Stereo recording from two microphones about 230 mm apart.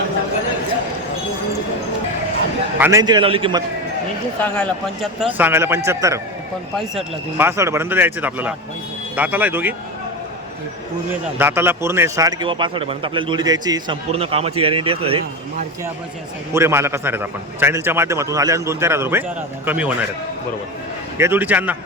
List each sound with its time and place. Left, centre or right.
2.7 s a man's voice: centre
4.4 s a man's voice: centre
5.2 s a man's voice: centre
11.3 s a man's voice: centre
16.6 s a man's voice: centre
21.2 s a man's voice: centre